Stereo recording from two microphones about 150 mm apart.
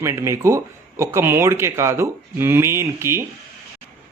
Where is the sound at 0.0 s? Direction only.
20° right (ahead or behind).